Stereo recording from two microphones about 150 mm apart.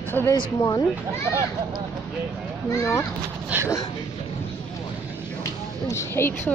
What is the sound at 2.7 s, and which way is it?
Speech, 20° left (ahead or behind).